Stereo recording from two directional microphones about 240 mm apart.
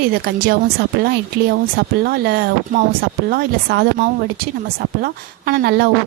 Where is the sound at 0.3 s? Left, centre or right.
Right.